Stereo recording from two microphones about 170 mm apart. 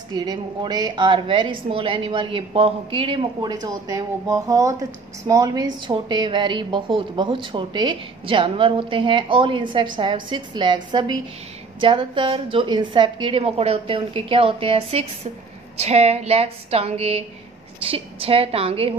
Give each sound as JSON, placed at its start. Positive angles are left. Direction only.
{"t": 0.1, "sound": "a woman's voice", "side_deg": -25}